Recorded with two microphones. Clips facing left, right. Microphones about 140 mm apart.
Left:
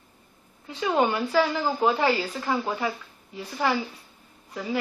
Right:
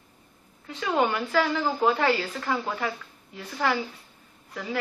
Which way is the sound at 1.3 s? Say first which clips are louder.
Left 1 dB; 5° left (ahead or behind).